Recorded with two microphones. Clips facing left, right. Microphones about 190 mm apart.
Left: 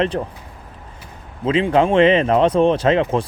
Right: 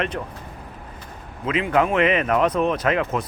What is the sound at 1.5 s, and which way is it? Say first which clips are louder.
Speech: left 5 dB; 30° left (ahead or behind).